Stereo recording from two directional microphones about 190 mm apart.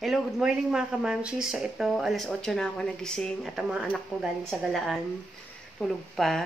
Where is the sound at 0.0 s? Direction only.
Centre (ahead or behind).